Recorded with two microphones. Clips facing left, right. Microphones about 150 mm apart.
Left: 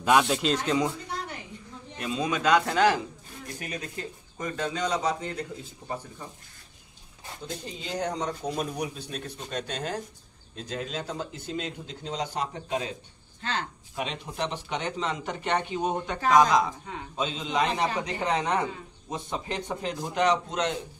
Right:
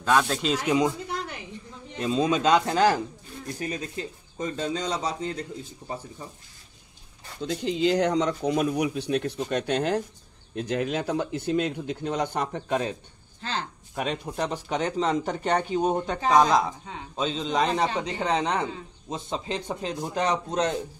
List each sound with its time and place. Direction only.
0.0 s speech: 10° left (ahead or behind)
0.6 s speech: 15° right (ahead or behind)
2.0 s a man's voice: 30° right (ahead or behind)
7.4 s speech: 85° right; by 12.9 s 50° right (ahead or behind)
13.4 s speech: 35° right (ahead or behind)
14.0 s speech: 45° right (ahead or behind)
17.8 s a man's voice: 25° right (ahead or behind)